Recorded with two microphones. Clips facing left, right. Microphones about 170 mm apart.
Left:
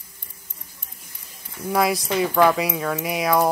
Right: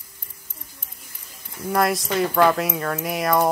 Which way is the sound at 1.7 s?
Centre (ahead or behind).